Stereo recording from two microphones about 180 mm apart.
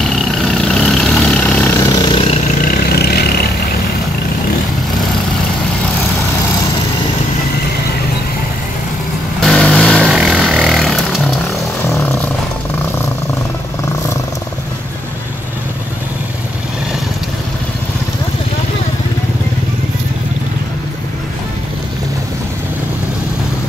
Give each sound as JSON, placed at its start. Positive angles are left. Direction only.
{"t": 0.5, "sound": "vehicle", "side_deg": 5}
{"t": 2.0, "sound": "vehicle", "side_deg": 30}
{"t": 2.6, "sound": "vehicle", "side_deg": 55}
{"t": 9.4, "sound": "vehicle", "side_deg": 5}